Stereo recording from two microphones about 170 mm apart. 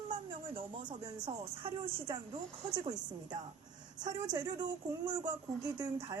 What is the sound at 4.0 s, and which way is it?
Speech, 25° right (ahead or behind).